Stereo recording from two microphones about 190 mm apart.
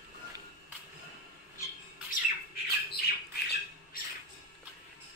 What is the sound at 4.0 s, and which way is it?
Music, 50° left (ahead or behind).